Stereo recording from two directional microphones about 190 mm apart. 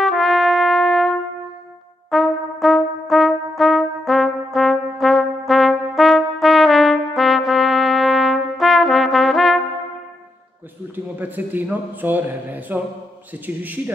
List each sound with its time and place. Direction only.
0.0 s trumpet: centre (ahead or behind)
2.0 s brass instrument: centre (ahead or behind)
11.1 s a man's voice: 10° right (ahead or behind)